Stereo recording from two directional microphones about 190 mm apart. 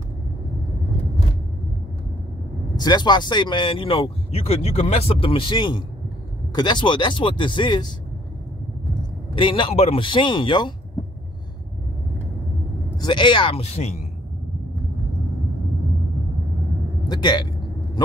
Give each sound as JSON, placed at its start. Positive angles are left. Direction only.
{"t": 2.7, "sound": "speech", "side_deg": 20}
{"t": 9.3, "sound": "speech", "side_deg": 25}
{"t": 12.9, "sound": "speech", "side_deg": 25}
{"t": 17.1, "sound": "speech", "side_deg": 25}